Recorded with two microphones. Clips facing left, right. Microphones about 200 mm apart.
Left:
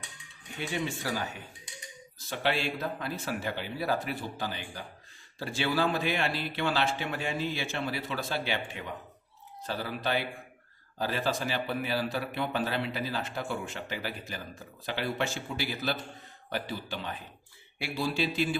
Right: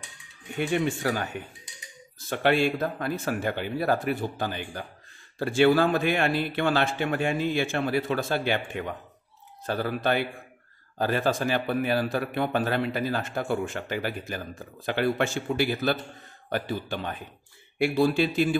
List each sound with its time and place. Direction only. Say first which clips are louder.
0.6 s speech: right 8 dB; 55° right (ahead or behind)